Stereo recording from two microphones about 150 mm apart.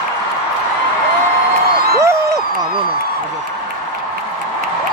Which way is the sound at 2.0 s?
20° right (ahead or behind).